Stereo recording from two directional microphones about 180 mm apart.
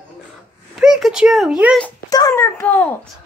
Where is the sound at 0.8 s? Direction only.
Centre (ahead or behind).